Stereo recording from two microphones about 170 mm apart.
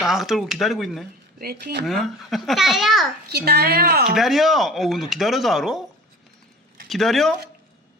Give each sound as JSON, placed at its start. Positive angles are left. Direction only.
{"t": 0.0, "sound": "speech", "side_deg": 0}
{"t": 1.4, "sound": "speech", "side_deg": -60}
{"t": 1.8, "sound": "speech", "side_deg": 0}
{"t": 3.3, "sound": "a woman's voice", "side_deg": -70}
{"t": 4.1, "sound": "speech", "side_deg": 0}
{"t": 6.8, "sound": "speech", "side_deg": 0}